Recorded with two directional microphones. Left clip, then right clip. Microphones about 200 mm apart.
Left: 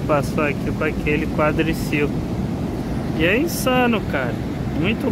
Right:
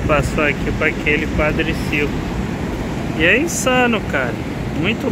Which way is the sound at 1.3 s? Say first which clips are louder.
Right 1 dB; 15° left (ahead or behind).